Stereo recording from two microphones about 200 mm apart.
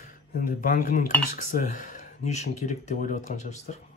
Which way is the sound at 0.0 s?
45° left (ahead or behind).